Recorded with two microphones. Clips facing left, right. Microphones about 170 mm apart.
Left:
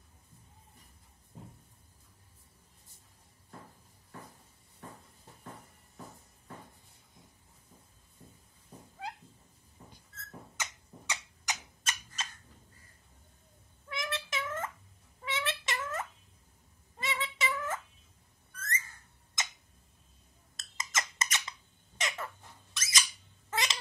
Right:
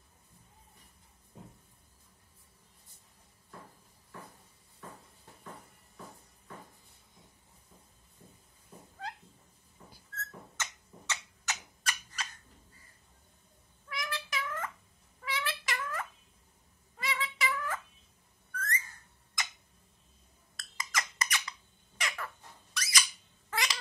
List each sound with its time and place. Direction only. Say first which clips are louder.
9.0 s cat: left 1 dB; 10° left (ahead or behind)
10.1 s a sound: right 1 dB; 15° left (ahead or behind)
13.8 s cat: left 2 dB; 25° left (ahead or behind)
15.2 s a sound: left 1 dB; 20° left (ahead or behind)
19.4 s tick-tock: left 1 dB; 20° left (ahead or behind)
20.5 s squeak: even; 20° left (ahead or behind)
23.5 s cat: left 1 dB; 20° left (ahead or behind)